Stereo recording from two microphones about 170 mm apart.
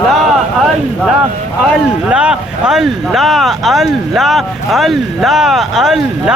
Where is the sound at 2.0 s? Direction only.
5° right (ahead or behind).